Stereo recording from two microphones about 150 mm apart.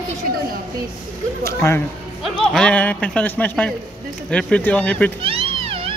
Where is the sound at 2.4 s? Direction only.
5° left (ahead or behind).